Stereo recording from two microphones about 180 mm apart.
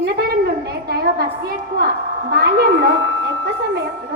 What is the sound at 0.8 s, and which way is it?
Speech, 60° right (ahead or behind).